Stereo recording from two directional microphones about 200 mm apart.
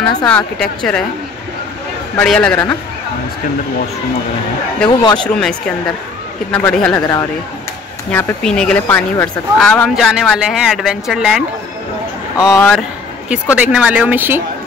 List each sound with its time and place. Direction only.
0.2 s a man's voice: 5° left (ahead or behind)
2.1 s speech: 5° left (ahead or behind)
4.8 s a man's voice: 25° left (ahead or behind)
5.3 s a man's voice: 5° left (ahead or behind)
12.4 s speech: 15° left (ahead or behind)
13.6 s speech: 5° right (ahead or behind)